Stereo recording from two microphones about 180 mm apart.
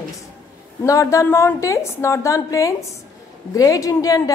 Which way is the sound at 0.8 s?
15° left (ahead or behind).